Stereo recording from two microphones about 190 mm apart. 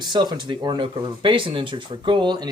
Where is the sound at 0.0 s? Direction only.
20° right (ahead or behind).